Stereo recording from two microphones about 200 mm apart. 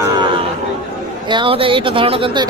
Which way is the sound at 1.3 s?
25° right (ahead or behind).